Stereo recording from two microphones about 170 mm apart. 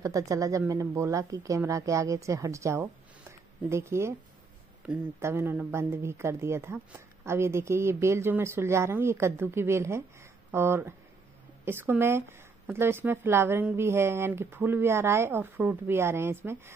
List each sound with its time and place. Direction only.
0.0 s speech: 20° right (ahead or behind)